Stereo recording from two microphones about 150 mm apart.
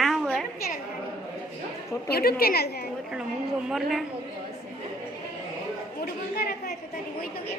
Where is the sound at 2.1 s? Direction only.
90° left.